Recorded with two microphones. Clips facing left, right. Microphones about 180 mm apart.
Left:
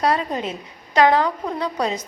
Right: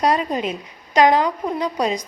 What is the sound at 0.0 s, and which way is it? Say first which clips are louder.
A woman's voice: right 2 dB; 15° right (ahead or behind).